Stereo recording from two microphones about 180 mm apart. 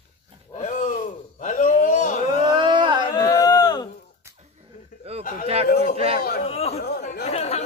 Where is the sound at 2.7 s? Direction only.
25° right (ahead or behind).